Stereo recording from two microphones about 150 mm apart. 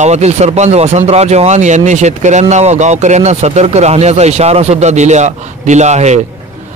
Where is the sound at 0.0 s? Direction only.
45° right (ahead or behind).